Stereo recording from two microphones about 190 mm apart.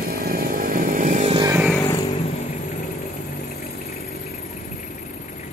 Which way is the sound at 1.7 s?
15° left (ahead or behind).